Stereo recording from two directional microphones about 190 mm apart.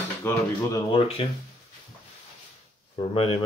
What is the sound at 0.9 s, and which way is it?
Speech, 25° left (ahead or behind).